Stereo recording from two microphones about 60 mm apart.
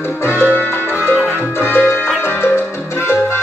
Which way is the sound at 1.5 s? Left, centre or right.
Left.